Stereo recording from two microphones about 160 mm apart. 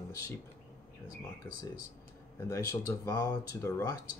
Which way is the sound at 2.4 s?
15° left (ahead or behind).